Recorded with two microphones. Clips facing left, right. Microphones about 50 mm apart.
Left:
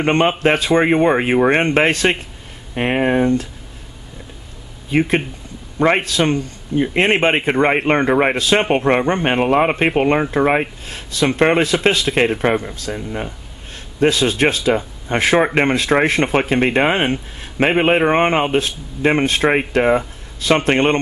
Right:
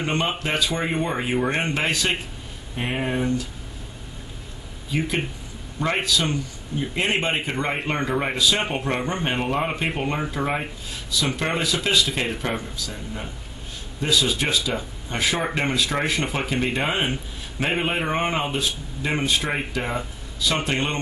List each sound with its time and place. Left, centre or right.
0.0 s speech: left
4.9 s speech: left